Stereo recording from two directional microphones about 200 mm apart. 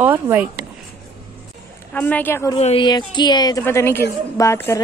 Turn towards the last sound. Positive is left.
turn(degrees=15)  # may be behind; listen again after turning